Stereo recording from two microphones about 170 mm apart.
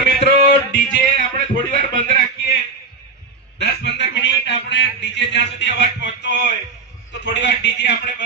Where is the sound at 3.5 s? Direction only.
90° left.